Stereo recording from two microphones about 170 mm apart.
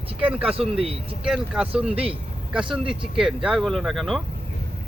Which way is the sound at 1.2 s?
5° right (ahead or behind).